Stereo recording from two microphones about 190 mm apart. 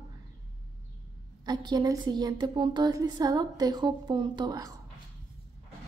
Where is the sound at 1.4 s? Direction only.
20° right (ahead or behind).